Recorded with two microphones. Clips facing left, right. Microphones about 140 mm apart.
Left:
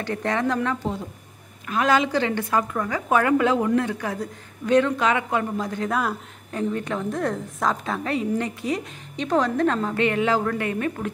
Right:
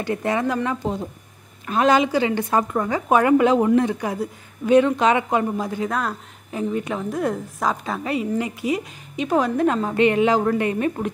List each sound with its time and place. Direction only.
0.0 s a woman's voice: 10° right (ahead or behind)
1.7 s a woman's voice: 25° right (ahead or behind)
2.5 s a woman's voice: 25° right (ahead or behind)
4.9 s a woman's voice: 25° right (ahead or behind)
5.6 s a woman's voice: 10° right (ahead or behind)
5.9 s speech: 5° left (ahead or behind)
6.5 s a woman's voice: 10° right (ahead or behind)